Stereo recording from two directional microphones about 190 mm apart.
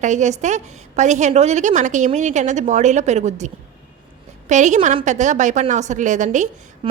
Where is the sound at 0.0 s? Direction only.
40° right (ahead or behind).